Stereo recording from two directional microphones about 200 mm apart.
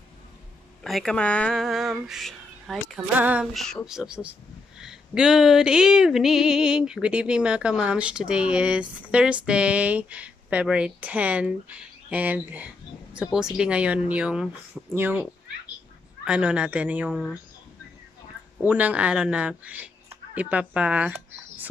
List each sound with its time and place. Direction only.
0.8 s a sound: centre (ahead or behind)
15.0 s speech: 10° right (ahead or behind)
16.3 s speech: 5° right (ahead or behind)
18.6 s speech: 10° right (ahead or behind)